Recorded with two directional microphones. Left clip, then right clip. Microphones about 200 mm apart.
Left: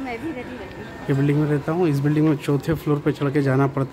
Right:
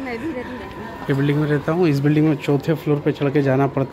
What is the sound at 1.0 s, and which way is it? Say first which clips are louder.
Speech: right 1 dB; 10° left (ahead or behind).